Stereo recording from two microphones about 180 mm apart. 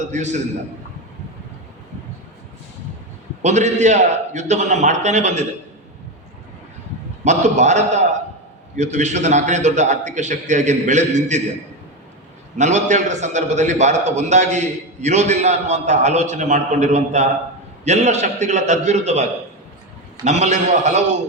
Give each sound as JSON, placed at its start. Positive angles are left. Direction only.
{"t": 0.0, "sound": "a man's voice", "side_deg": -40}
{"t": 3.4, "sound": "a man's voice", "side_deg": -40}
{"t": 7.3, "sound": "a man's voice", "side_deg": -40}
{"t": 12.5, "sound": "a man's voice", "side_deg": -40}
{"t": 20.2, "sound": "a man's voice", "side_deg": -40}